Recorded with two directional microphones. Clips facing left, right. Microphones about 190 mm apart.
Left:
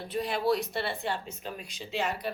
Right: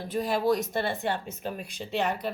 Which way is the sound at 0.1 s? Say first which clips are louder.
Right 2 dB; 45° right (ahead or behind).